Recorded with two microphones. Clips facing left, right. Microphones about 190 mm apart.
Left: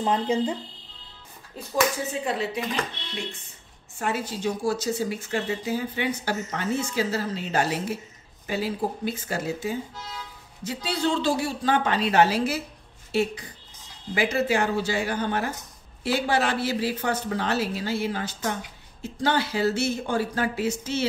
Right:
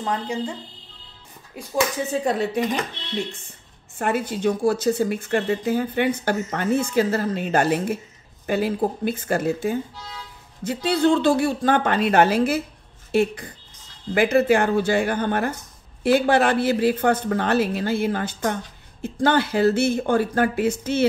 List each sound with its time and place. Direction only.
0.0 s speech: 20° left (ahead or behind)
2.2 s speech: 45° right (ahead or behind)
4.0 s speech: 55° right (ahead or behind)